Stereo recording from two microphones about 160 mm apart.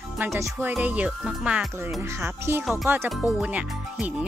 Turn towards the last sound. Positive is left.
turn(degrees=-10)  # may be behind; listen again after turning